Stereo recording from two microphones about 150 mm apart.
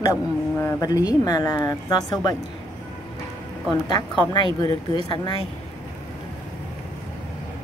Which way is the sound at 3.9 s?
30° left (ahead or behind).